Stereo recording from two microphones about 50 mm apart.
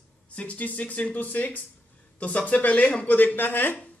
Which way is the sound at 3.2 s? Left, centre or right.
Left.